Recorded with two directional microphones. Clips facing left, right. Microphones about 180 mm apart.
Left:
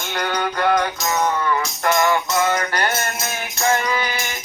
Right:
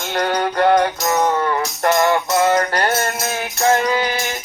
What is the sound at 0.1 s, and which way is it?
Music, 35° right (ahead or behind).